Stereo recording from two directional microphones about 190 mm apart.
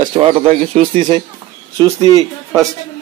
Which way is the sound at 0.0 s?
30° right (ahead or behind).